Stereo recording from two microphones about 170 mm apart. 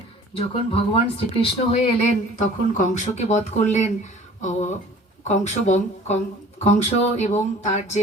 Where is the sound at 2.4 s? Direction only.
50° left (ahead or behind).